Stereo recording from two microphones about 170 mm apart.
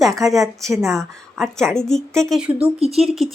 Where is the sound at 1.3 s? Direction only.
Centre (ahead or behind).